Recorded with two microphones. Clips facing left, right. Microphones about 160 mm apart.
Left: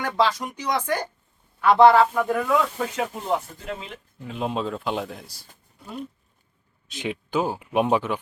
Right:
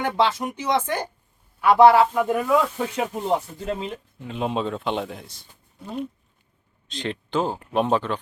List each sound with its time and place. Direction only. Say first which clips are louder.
0.2 s speech: left 1 dB; 25° right (ahead or behind)
1.6 s speech: right 1 dB; 10° right (ahead or behind)
2.9 s speech: right 2 dB; 30° right (ahead or behind)
4.2 s speech: right 1 dB; centre (ahead or behind)
5.3 s a sound: left 1 dB; 20° right (ahead or behind)
6.9 s speech: even; 5° left (ahead or behind)